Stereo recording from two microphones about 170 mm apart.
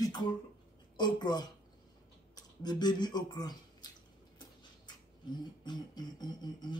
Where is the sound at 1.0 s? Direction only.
25° left (ahead or behind).